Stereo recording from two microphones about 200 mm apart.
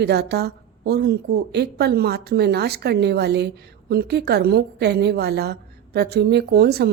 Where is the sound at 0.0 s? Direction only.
55° right (ahead or behind).